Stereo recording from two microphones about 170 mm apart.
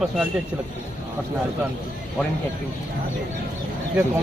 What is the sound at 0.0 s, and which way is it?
Speech, centre (ahead or behind).